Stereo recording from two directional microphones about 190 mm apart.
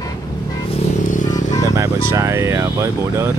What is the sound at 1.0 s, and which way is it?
Vehicle, 40° left (ahead or behind).